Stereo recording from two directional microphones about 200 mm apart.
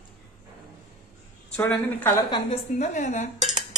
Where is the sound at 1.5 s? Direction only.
10° left (ahead or behind).